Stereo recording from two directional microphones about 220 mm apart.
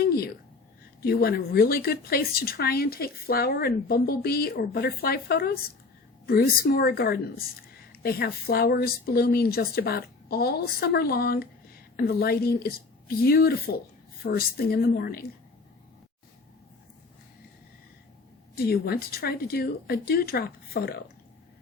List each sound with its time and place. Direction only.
0.0 s a sound: 45° left (ahead or behind)
1.0 s a woman's voice: 45° left (ahead or behind)
18.5 s a woman's voice: 45° left (ahead or behind)